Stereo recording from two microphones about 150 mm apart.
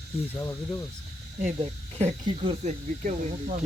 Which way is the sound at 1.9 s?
45° right (ahead or behind).